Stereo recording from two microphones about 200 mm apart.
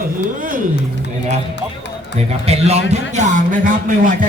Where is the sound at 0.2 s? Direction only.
45° right (ahead or behind).